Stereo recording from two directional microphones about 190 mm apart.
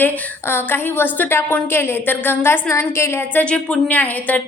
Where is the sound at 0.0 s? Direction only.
10° left (ahead or behind).